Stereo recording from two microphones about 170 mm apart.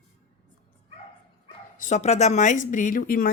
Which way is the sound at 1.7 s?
45° left (ahead or behind).